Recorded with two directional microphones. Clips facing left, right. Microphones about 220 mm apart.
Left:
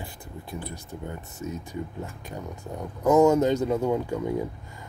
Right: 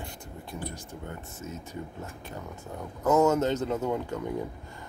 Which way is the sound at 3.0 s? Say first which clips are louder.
Left 4 dB; 15° left (ahead or behind).